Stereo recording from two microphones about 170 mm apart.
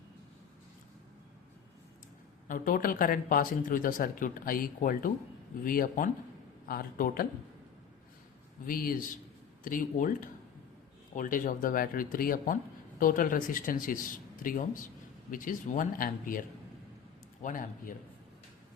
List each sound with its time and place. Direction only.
2.5 s speech: 55° left (ahead or behind)
8.6 s speech: 55° left (ahead or behind)